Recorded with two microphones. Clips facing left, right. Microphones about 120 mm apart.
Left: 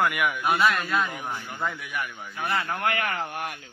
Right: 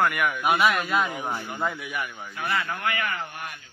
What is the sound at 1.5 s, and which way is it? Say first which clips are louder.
Speech: right 2 dB; 5° right (ahead or behind).